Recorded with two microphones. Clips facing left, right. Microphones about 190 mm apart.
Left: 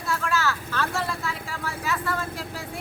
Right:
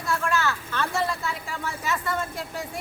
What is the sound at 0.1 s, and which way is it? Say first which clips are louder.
Vehicle: right 1 dB; centre (ahead or behind).